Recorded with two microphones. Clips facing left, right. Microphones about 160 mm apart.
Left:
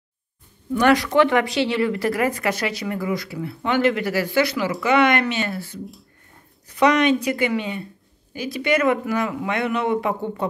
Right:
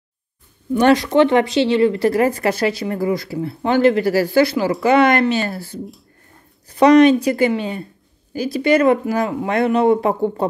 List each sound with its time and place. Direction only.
0.7 s speech: 25° right (ahead or behind)